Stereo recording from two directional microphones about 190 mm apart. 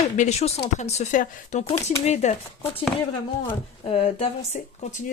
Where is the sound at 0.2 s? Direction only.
35° left (ahead or behind).